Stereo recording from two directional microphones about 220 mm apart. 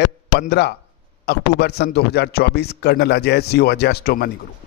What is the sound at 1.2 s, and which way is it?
A man's voice, 50° left (ahead or behind).